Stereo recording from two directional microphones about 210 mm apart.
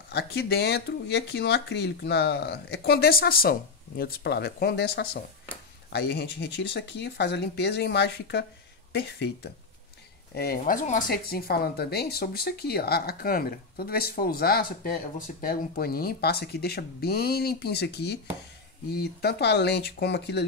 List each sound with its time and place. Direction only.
0.1 s speech: 50° left (ahead or behind)
10.6 s speech: 35° left (ahead or behind); by 20.4 s 55° left (ahead or behind)